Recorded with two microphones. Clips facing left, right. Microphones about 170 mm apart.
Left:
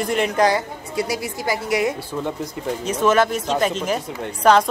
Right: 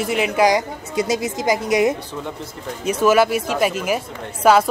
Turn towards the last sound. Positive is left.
turn(degrees=-5)  # may be behind; listen again after turning